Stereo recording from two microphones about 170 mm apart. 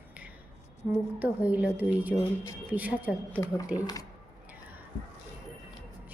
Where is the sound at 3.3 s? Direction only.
20° left (ahead or behind).